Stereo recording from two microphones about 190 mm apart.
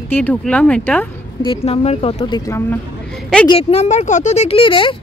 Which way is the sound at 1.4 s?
30° left (ahead or behind).